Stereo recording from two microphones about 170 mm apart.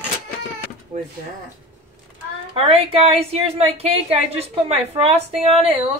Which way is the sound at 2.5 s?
35° right (ahead or behind).